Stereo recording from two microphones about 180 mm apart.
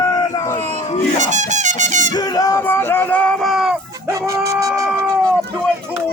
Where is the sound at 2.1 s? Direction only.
20° left (ahead or behind); by 3.8 s centre (ahead or behind).